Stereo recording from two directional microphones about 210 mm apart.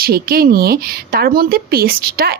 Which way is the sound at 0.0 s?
45° right (ahead or behind).